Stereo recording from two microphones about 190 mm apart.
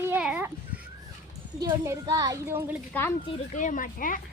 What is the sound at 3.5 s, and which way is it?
Speech, 40° left (ahead or behind).